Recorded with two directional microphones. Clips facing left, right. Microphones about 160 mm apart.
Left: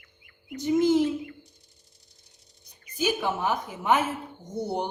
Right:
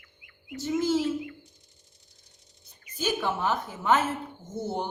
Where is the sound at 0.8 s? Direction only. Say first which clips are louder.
Left 4 dB; 20° left (ahead or behind).